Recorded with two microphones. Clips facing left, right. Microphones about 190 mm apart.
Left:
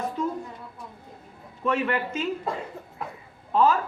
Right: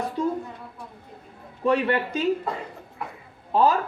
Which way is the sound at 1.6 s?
35° right (ahead or behind).